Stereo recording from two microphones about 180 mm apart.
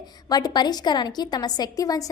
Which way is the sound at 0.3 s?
20° left (ahead or behind).